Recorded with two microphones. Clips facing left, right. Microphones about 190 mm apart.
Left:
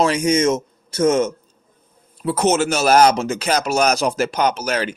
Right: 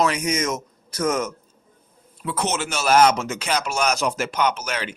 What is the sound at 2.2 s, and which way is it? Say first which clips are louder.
Speech: left 8 dB; 45° left (ahead or behind).